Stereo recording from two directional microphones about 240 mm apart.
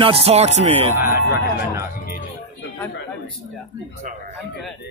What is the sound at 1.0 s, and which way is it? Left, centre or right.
Speech, left.